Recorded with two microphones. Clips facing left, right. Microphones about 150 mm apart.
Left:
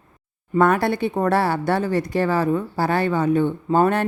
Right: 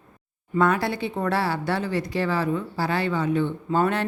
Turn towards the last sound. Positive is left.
turn(degrees=45)  # may be behind; listen again after turning